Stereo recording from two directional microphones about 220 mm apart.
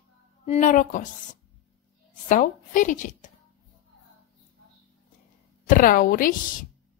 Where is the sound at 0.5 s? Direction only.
35° left (ahead or behind).